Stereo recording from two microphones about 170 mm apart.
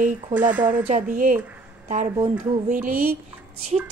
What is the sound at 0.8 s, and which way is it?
A woman's voice, 50° right (ahead or behind).